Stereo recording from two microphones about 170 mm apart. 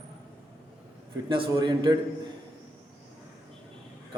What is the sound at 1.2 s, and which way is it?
Speech, 30° right (ahead or behind).